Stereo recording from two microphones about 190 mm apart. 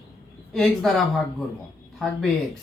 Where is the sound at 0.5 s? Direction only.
Centre (ahead or behind).